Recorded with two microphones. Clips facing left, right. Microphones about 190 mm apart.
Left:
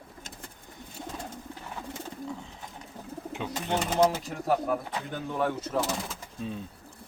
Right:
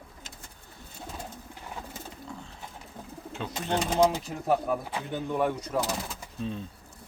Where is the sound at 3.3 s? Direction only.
15° left (ahead or behind).